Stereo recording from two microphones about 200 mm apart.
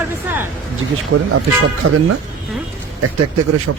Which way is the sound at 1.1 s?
65° right (ahead or behind).